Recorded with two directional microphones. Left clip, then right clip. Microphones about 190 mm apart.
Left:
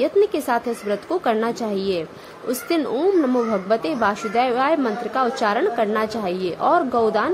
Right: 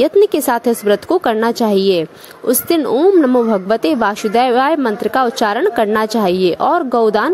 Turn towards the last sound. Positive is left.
turn(degrees=-45)  # may be behind; listen again after turning